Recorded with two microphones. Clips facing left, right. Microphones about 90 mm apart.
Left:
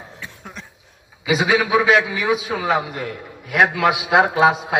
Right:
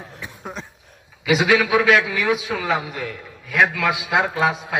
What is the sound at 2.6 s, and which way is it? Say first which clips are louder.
Speech: left 4 dB; 45° left (ahead or behind).